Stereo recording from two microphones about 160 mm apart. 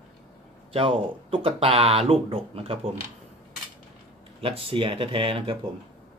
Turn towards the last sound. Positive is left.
turn(degrees=-30)  # may be behind; listen again after turning